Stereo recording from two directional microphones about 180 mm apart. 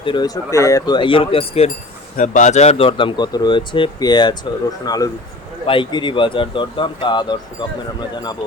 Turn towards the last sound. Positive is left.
turn(degrees=25)  # may be behind; listen again after turning